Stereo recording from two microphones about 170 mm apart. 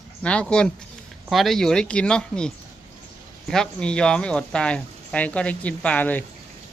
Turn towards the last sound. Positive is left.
turn(degrees=10)  # may be behind; listen again after turning